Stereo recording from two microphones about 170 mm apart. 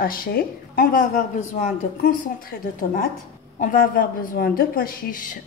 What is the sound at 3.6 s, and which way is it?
A woman's voice, 55° left (ahead or behind).